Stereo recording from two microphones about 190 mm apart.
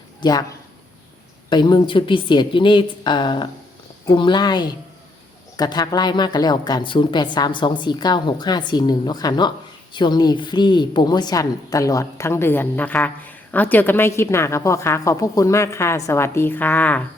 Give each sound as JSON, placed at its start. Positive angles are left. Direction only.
{"t": 0.2, "sound": "speech", "side_deg": 20}
{"t": 1.5, "sound": "a woman's voice", "side_deg": 25}